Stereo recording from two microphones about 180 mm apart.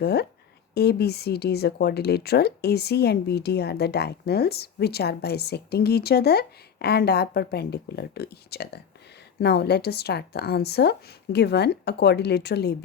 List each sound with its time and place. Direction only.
0.0 s speech: 60° left (ahead or behind)